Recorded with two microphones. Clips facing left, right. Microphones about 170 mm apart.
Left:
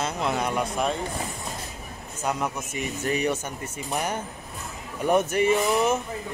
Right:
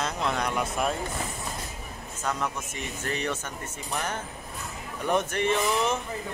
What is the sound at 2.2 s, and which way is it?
Speech, 10° left (ahead or behind).